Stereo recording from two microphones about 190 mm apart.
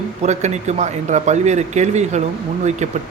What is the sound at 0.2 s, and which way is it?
Speech, 35° right (ahead or behind).